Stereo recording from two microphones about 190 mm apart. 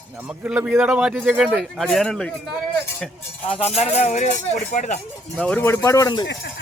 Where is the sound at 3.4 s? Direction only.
30° left (ahead or behind).